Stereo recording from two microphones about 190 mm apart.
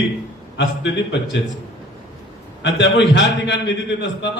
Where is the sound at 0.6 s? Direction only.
65° left (ahead or behind).